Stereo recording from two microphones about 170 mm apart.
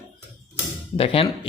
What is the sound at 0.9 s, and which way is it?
Speech, 35° left (ahead or behind).